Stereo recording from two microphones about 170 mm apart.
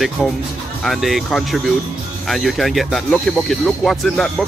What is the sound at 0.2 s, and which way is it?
Speech, 5° left (ahead or behind).